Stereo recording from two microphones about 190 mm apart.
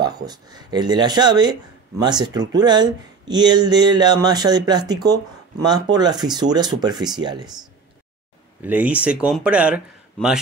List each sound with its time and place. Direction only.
0.0 s speech: 20° right (ahead or behind)
8.6 s speech: 10° right (ahead or behind)